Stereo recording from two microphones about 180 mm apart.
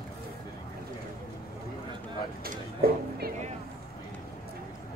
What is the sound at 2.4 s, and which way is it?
Speech, 55° right (ahead or behind).